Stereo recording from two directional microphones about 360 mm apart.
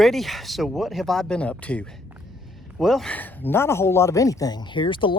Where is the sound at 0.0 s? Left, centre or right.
Centre.